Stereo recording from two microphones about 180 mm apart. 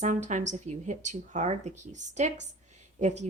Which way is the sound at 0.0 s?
40° right (ahead or behind).